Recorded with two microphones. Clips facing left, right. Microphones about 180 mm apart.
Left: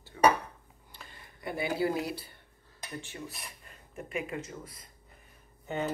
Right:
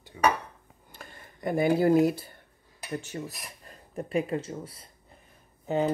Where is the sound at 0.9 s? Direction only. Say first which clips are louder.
Right 5 dB; 50° right (ahead or behind).